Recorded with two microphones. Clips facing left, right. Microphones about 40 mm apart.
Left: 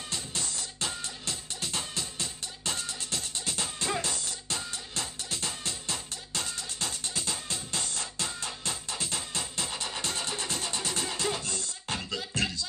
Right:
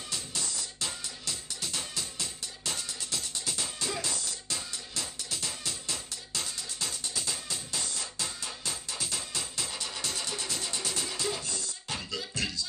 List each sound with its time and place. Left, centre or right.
0.1 s music: left